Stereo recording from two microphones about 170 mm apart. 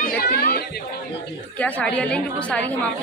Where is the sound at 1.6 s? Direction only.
10° left (ahead or behind).